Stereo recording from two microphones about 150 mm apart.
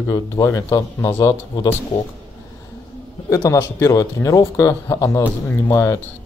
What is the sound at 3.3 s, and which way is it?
Speech, 20° left (ahead or behind).